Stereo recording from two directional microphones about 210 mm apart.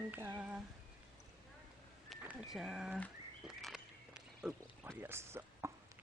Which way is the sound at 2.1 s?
Centre (ahead or behind).